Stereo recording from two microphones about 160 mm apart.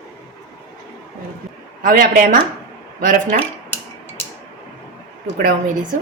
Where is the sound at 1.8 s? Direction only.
60° right (ahead or behind).